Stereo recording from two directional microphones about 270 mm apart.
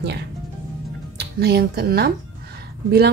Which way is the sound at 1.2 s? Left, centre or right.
Right.